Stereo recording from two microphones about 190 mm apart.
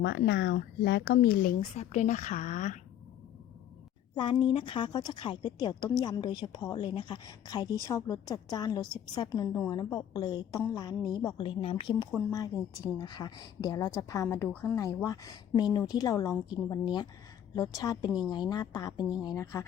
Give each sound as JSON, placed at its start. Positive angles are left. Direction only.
{"t": 0.0, "sound": "speech", "side_deg": 65}
{"t": 1.7, "sound": "speech", "side_deg": 35}
{"t": 4.1, "sound": "a woman's voice", "side_deg": 25}
{"t": 12.1, "sound": "a woman's voice", "side_deg": 15}